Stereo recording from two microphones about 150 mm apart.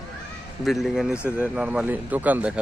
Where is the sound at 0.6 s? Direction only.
Centre (ahead or behind).